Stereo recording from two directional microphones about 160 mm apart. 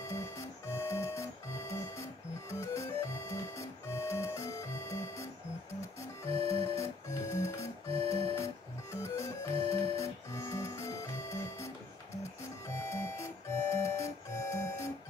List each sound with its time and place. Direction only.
0.0 s music: 20° left (ahead or behind)
6.2 s music: 40° right (ahead or behind)
6.7 s music: 15° left (ahead or behind)
8.9 s music: 15° left (ahead or behind)